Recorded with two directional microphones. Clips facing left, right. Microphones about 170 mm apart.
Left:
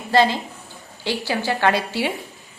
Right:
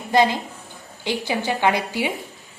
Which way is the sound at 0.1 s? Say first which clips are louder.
Left 1 dB; 15° right (ahead or behind).